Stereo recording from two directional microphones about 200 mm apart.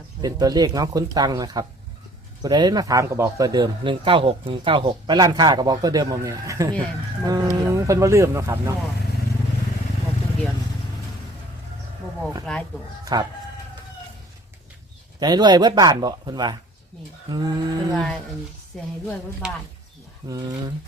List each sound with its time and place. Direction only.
0.2 s speech: 20° right (ahead or behind)
12.5 s speech: 5° left (ahead or behind)
13.1 s speech: 20° right (ahead or behind)
15.2 s speech: 20° right (ahead or behind)
17.9 s speech: 5° left (ahead or behind)
20.2 s speech: 20° right (ahead or behind)